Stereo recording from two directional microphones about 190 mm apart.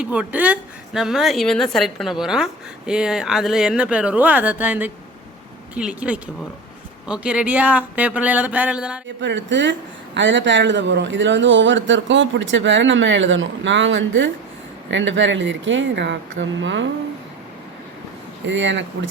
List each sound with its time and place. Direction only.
0.0 s a woman's voice: 5° right (ahead or behind)
9.2 s speech: 70° right (ahead or behind)
18.4 s speech: 75° right (ahead or behind)